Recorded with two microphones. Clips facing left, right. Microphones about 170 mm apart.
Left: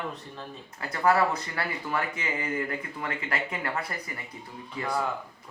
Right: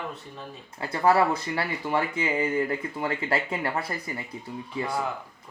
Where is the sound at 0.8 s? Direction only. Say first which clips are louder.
Right 2 dB; 25° right (ahead or behind).